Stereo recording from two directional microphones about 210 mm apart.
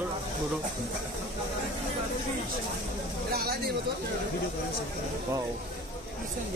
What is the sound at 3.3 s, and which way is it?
Speech, 45° right (ahead or behind).